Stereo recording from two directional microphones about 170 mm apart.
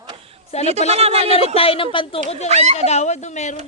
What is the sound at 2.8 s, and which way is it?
Speech, 40° left (ahead or behind).